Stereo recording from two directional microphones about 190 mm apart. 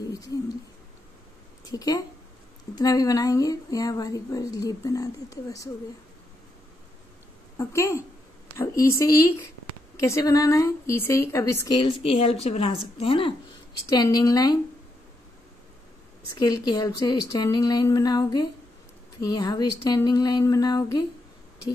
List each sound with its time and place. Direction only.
0.1 s speech: 20° left (ahead or behind)
1.6 s a woman's voice: 20° left (ahead or behind)
7.5 s a woman's voice: 15° left (ahead or behind)
16.3 s speech: 20° left (ahead or behind)